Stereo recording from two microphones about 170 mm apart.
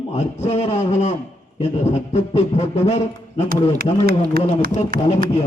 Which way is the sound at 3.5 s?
60° right (ahead or behind).